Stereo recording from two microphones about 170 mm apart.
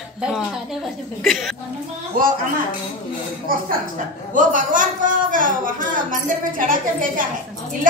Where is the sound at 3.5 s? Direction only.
55° right (ahead or behind).